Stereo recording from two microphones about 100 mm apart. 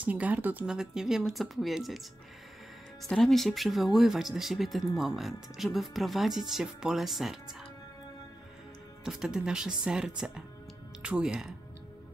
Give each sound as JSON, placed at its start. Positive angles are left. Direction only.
{"t": 0.0, "sound": "speech", "side_deg": -15}
{"t": 0.7, "sound": "speech", "side_deg": -5}
{"t": 3.0, "sound": "speech", "side_deg": 5}
{"t": 9.0, "sound": "speech", "side_deg": -5}